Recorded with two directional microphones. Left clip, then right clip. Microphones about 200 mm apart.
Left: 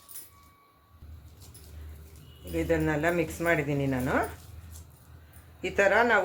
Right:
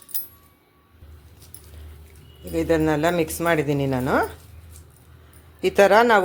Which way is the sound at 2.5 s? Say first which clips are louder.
Right 7 dB; 45° right (ahead or behind).